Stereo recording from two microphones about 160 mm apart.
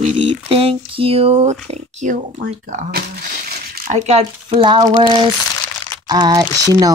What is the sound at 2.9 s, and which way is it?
Speech, 70° right (ahead or behind).